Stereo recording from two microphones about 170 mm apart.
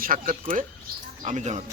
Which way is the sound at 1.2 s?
45° right (ahead or behind).